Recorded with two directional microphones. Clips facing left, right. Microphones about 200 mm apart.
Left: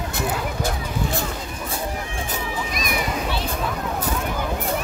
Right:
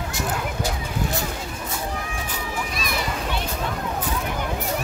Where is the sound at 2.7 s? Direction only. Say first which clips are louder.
Left 3 dB; 15° left (ahead or behind).